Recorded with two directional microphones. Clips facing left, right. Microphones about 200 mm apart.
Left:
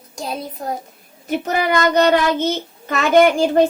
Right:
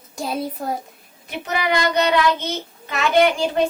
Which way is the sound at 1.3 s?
45° left (ahead or behind).